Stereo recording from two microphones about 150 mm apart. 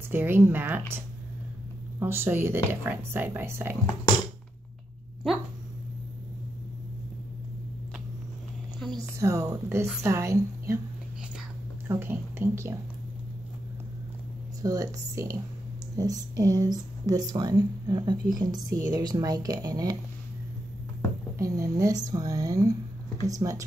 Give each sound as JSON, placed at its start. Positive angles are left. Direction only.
{"t": 0.1, "sound": "speech", "side_deg": -15}
{"t": 8.9, "sound": "speech", "side_deg": -20}
{"t": 11.9, "sound": "speech", "side_deg": -15}
{"t": 14.6, "sound": "speech", "side_deg": -20}
{"t": 21.4, "sound": "speech", "side_deg": -20}